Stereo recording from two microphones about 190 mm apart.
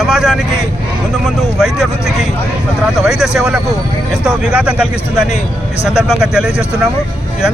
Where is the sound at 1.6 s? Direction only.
Centre (ahead or behind).